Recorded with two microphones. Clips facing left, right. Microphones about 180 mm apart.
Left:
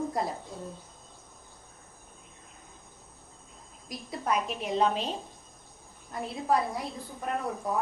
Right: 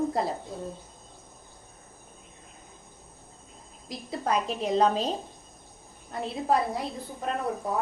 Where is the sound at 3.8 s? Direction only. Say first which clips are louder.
Right 2 dB; 30° right (ahead or behind).